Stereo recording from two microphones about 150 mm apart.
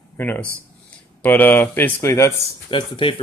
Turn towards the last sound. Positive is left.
turn(degrees=35)  # may be behind; listen again after turning